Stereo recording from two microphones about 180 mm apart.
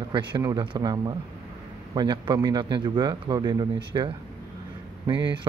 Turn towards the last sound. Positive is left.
turn(degrees=-25)  # may be behind; listen again after turning